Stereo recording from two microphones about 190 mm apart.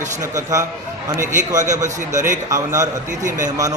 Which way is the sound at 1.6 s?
40° right (ahead or behind).